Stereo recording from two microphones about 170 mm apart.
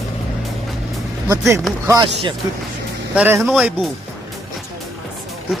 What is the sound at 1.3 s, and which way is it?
Speech, 20° right (ahead or behind).